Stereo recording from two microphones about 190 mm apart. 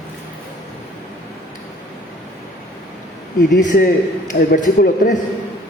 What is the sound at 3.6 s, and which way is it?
A man's voice, 40° left (ahead or behind).